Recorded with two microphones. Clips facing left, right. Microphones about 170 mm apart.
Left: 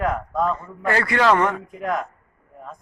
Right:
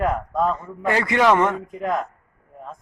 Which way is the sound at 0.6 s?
20° right (ahead or behind).